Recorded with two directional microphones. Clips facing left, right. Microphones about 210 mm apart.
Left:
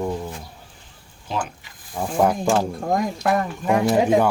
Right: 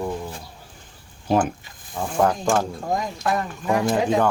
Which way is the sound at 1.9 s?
10° left (ahead or behind).